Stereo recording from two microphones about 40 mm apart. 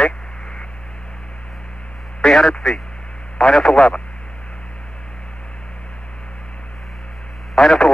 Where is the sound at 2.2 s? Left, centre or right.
Centre.